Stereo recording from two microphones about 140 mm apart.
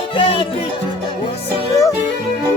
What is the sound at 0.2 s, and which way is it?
Music, 40° left (ahead or behind).